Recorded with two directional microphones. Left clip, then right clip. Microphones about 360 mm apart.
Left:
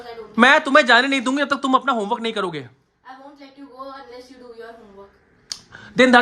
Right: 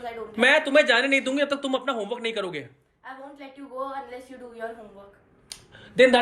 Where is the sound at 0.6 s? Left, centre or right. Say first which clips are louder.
Left 5 dB; centre.